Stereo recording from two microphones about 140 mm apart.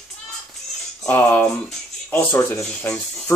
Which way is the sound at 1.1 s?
15° left (ahead or behind).